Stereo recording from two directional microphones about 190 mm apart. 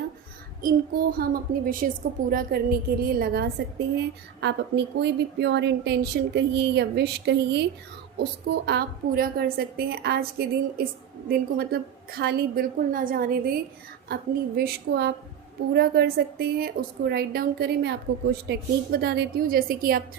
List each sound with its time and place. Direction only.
0.6 s a woman's voice: 50° right (ahead or behind)
3.9 s a woman's voice: 65° right (ahead or behind)